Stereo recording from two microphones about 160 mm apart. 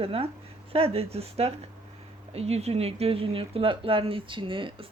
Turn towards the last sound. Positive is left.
turn(degrees=-30)  # may be behind; listen again after turning